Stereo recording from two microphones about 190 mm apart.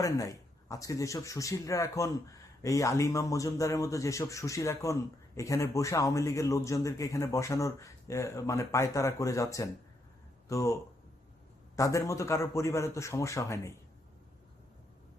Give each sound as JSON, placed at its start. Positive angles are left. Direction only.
{"t": 0.0, "sound": "a man's voice", "side_deg": 20}
{"t": 11.8, "sound": "a man's voice", "side_deg": 15}